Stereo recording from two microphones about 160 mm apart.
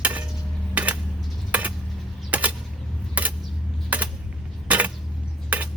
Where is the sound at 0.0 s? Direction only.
10° right (ahead or behind).